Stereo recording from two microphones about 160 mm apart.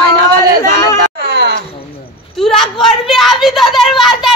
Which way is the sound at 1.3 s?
90° right.